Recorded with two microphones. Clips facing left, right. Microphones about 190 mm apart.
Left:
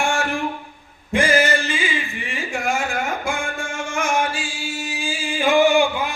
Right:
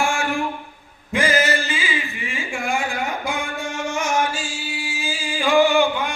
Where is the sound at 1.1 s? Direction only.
30° left (ahead or behind).